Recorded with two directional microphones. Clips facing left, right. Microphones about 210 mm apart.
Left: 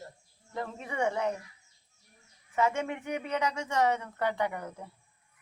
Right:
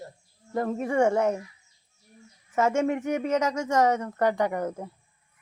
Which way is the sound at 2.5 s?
45° right (ahead or behind).